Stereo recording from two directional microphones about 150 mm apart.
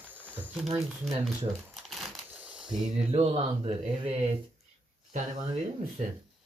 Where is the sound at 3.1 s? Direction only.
40° right (ahead or behind).